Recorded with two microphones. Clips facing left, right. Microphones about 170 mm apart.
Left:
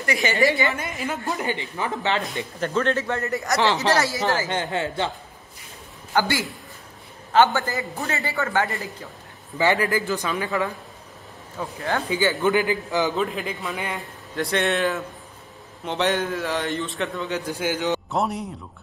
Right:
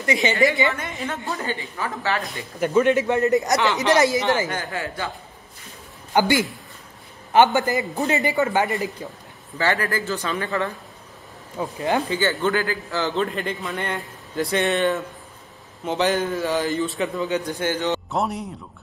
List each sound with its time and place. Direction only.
0.0 s a woman's voice: 20° right (ahead or behind)
0.7 s a woman's voice: centre (ahead or behind)
1.2 s speech: 15° left (ahead or behind)
2.6 s a man's voice: 10° right (ahead or behind)
3.5 s speech: 35° left (ahead or behind)
4.5 s speech: 25° left (ahead or behind)
6.1 s a man's voice: 15° right (ahead or behind)
9.6 s speech: 15° left (ahead or behind)
11.6 s a man's voice: 15° right (ahead or behind)
12.1 s speech: 10° left (ahead or behind)
13.1 s a man's voice: centre (ahead or behind)
18.1 s a man's voice: centre (ahead or behind)